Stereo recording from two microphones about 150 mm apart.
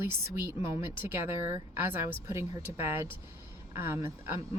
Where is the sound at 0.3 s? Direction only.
15° right (ahead or behind).